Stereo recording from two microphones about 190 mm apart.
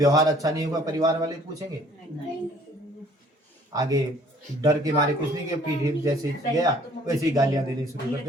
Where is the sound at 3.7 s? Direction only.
20° right (ahead or behind).